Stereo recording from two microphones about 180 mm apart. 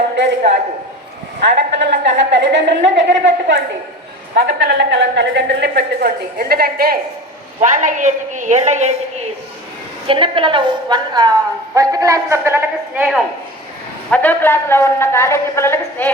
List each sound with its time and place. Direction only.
1.4 s a woman's voice: 70° right (ahead or behind)
4.4 s a woman's voice: 65° right (ahead or behind)
7.6 s a woman's voice: 45° right (ahead or behind)
10.1 s a woman's voice: 30° right (ahead or behind)
14.1 s a woman's voice: 10° left (ahead or behind)